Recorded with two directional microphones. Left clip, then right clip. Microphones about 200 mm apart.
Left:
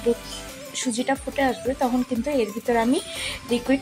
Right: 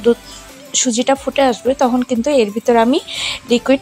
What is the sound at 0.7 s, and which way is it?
A woman's voice, 25° right (ahead or behind).